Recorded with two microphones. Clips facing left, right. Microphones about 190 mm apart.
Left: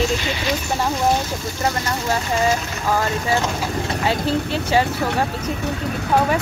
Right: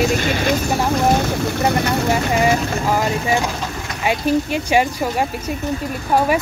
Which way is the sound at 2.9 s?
15° right (ahead or behind).